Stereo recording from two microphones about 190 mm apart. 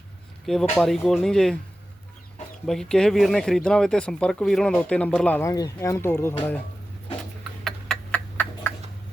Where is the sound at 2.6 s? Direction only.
Centre (ahead or behind).